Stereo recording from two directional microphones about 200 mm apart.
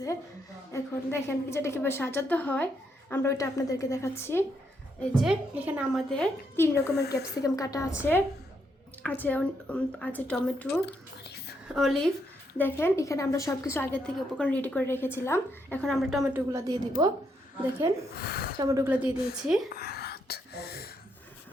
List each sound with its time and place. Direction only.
0.7 s a woman's voice: 15° left (ahead or behind)
5.2 s a woman's voice: 5° right (ahead or behind)
11.7 s a woman's voice: centre (ahead or behind)
16.5 s a woman's voice: 20° right (ahead or behind)
18.2 s a woman's voice: 50° left (ahead or behind)
18.6 s a woman's voice: 15° right (ahead or behind)
19.7 s gasp: 50° left (ahead or behind)